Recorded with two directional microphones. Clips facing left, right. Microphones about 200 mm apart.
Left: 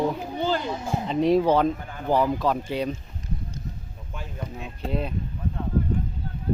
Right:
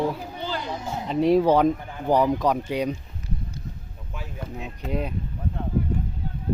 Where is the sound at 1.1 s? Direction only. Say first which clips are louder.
Right 1 dB; 10° right (ahead or behind).